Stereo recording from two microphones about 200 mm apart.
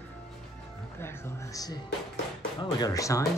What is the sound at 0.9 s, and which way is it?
Speech, 10° left (ahead or behind).